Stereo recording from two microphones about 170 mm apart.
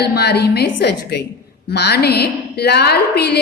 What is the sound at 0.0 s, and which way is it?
A woman's voice, 75° left (ahead or behind).